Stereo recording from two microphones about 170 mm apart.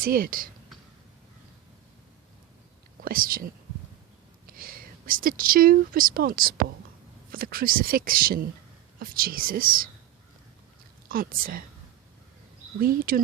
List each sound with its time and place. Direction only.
0.0 s speech: 60° right (ahead or behind)
3.0 s speech: 55° right (ahead or behind)
11.1 s speech: 55° right (ahead or behind)
12.8 s speech: 60° right (ahead or behind)